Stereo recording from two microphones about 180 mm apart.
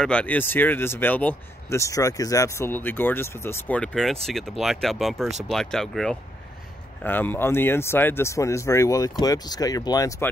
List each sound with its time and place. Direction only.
0.0 s speech: 5° left (ahead or behind)